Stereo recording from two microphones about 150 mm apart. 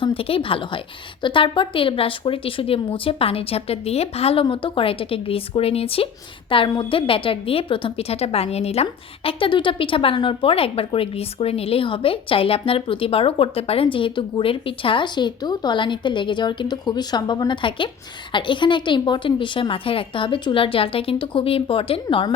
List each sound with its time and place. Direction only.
0.0 s a woman's voice: 40° left (ahead or behind)